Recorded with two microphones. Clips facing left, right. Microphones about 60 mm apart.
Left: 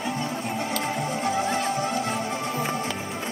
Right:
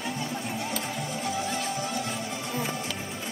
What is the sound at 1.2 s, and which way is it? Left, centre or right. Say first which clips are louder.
Music: left 6 dB; left.